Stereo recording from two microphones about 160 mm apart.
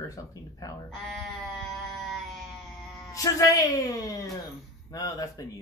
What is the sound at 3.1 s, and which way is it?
A man's voice, 20° left (ahead or behind).